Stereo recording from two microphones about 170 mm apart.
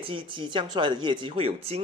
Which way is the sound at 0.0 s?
30° right (ahead or behind).